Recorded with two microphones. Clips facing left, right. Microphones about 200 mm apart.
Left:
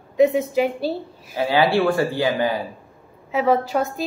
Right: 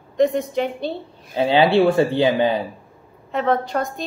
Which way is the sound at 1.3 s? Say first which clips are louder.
Right 3 dB; 25° right (ahead or behind).